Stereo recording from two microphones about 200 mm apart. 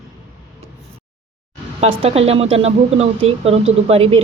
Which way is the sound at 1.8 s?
30° right (ahead or behind).